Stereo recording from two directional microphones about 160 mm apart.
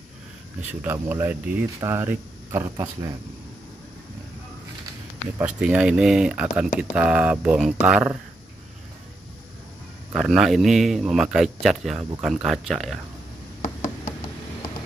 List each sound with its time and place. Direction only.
0.7 s speech: 10° right (ahead or behind)
5.4 s speech: 10° right (ahead or behind)
10.1 s speech: 5° right (ahead or behind)